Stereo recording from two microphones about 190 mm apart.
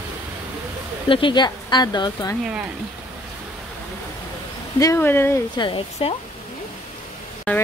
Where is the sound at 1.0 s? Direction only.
25° left (ahead or behind).